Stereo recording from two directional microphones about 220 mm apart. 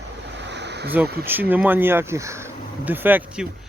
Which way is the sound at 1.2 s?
10° right (ahead or behind).